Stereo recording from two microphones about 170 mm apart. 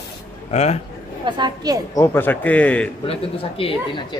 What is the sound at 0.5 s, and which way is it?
Speech, 40° left (ahead or behind).